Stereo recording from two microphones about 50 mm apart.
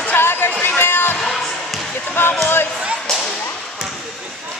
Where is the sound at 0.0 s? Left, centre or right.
Left.